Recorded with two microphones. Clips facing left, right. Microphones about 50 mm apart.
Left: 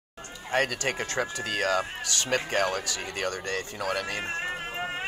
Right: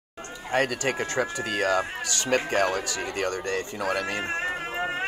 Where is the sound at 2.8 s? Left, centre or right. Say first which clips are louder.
Right 3 dB; right.